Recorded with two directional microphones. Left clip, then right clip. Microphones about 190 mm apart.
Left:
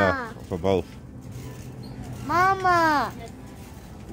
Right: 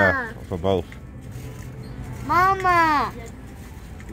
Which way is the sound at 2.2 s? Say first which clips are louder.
Right 2 dB; centre (ahead or behind).